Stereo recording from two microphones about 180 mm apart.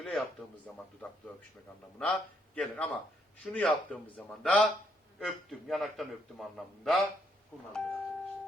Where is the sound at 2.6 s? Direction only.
5° left (ahead or behind).